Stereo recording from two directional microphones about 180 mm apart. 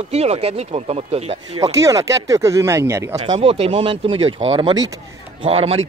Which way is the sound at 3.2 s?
30° right (ahead or behind).